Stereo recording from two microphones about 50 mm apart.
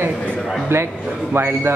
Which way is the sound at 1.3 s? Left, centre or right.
Right.